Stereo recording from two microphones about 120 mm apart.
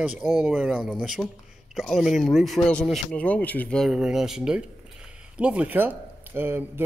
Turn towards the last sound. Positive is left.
turn(degrees=-20)  # may be behind; listen again after turning